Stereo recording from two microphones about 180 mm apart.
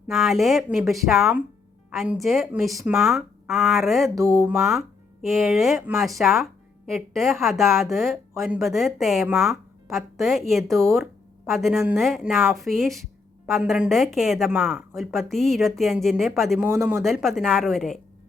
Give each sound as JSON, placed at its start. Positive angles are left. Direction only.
{"t": 0.1, "sound": "a woman's voice", "side_deg": 0}
{"t": 4.1, "sound": "speech", "side_deg": -15}
{"t": 4.5, "sound": "a woman's voice", "side_deg": 0}
{"t": 16.6, "sound": "speech", "side_deg": -10}
{"t": 17.0, "sound": "a woman's voice", "side_deg": 0}